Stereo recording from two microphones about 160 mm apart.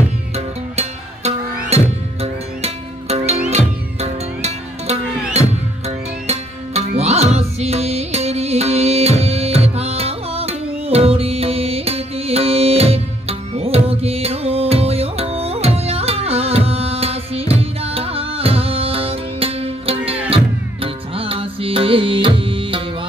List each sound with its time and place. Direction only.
2.2 s music: 40° right (ahead or behind)